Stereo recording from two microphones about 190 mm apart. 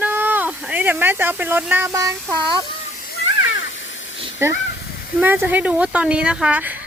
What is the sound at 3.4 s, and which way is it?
Hiss, 80° left.